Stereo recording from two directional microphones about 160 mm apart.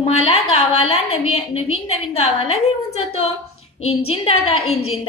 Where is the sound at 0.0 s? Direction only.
40° left (ahead or behind).